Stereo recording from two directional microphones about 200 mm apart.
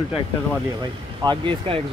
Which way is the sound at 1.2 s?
25° right (ahead or behind).